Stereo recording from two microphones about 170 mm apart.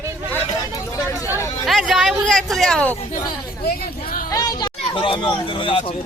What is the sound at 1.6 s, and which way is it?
Speech, centre (ahead or behind).